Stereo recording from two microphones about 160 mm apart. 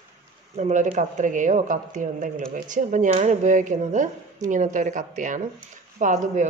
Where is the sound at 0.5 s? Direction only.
50° right (ahead or behind).